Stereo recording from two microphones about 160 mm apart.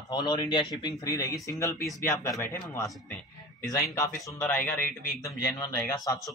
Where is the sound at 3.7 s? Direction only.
20° left (ahead or behind).